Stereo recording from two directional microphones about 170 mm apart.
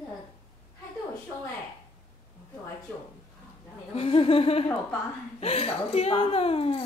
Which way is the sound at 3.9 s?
35° left (ahead or behind).